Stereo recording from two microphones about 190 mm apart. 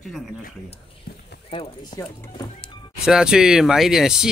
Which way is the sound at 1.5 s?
30° left (ahead or behind).